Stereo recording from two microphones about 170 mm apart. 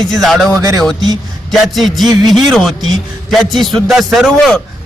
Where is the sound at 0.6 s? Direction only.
20° right (ahead or behind).